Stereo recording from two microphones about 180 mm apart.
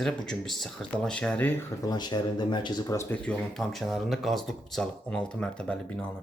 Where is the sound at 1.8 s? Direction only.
25° left (ahead or behind).